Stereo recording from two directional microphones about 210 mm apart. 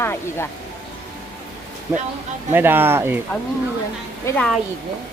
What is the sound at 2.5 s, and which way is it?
Speech, 10° right (ahead or behind).